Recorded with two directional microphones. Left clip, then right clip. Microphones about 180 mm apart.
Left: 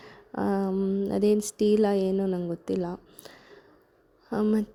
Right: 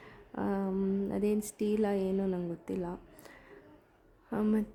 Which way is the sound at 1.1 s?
25° left (ahead or behind).